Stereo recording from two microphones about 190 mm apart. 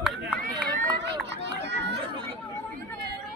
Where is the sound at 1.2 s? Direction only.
65° right (ahead or behind).